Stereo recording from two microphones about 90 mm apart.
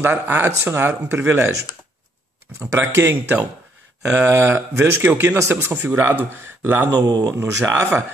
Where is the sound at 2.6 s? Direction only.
25° right (ahead or behind).